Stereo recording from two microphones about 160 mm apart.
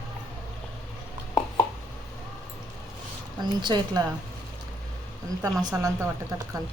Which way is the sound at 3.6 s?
30° right (ahead or behind).